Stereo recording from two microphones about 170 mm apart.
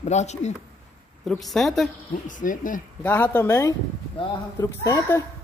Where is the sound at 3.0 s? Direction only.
10° left (ahead or behind).